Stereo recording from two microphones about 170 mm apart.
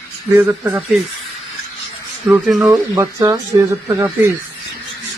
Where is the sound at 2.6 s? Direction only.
20° right (ahead or behind).